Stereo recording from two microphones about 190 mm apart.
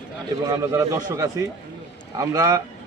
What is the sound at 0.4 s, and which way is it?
A man's voice, 15° right (ahead or behind).